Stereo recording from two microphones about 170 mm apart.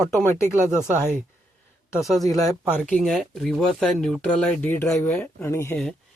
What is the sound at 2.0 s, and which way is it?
Speech, centre (ahead or behind).